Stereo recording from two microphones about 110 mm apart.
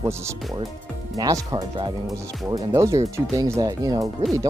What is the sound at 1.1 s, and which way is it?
Speech, 35° right (ahead or behind).